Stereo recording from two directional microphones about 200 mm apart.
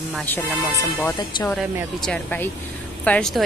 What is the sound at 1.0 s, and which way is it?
Speech, 20° left (ahead or behind).